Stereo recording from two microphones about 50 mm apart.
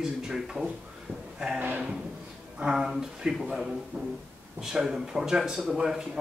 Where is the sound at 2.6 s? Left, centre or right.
Centre.